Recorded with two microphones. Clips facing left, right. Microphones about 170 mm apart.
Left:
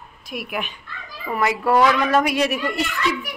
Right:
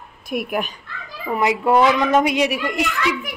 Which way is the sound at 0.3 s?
50° right (ahead or behind).